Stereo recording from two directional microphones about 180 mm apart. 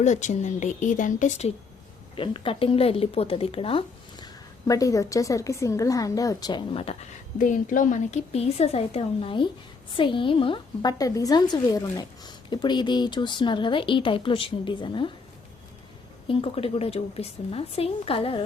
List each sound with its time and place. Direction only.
0.0 s a woman's voice: 40° left (ahead or behind)
2.1 s a woman's voice: 30° left (ahead or behind)
7.3 s a woman's voice: 45° left (ahead or behind); by 15.1 s 25° left (ahead or behind)
16.2 s a woman's voice: 30° left (ahead or behind)